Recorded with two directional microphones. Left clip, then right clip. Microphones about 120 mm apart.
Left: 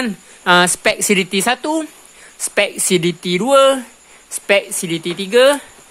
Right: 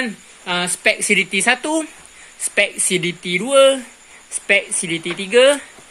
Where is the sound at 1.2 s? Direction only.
40° left (ahead or behind).